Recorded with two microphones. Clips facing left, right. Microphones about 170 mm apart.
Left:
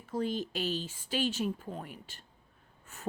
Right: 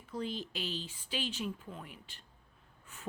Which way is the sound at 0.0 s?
45° left (ahead or behind).